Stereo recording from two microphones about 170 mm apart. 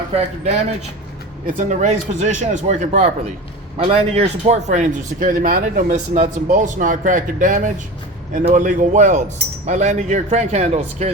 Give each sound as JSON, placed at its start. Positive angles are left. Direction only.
{"t": 0.1, "sound": "speech", "side_deg": -40}